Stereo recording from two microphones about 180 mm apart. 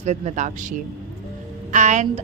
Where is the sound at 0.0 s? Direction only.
40° right (ahead or behind).